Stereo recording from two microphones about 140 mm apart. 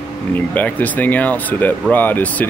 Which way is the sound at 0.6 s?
10° left (ahead or behind).